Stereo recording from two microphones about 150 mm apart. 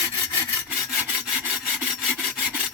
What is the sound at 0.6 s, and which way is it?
Rub, 5° right (ahead or behind).